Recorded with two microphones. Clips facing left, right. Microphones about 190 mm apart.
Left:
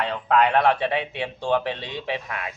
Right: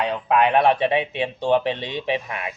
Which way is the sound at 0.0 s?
15° right (ahead or behind).